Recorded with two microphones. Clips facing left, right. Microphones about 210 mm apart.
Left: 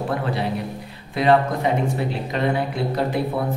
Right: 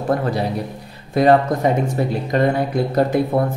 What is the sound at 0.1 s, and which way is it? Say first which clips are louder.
Speech: right 7 dB; 40° right (ahead or behind).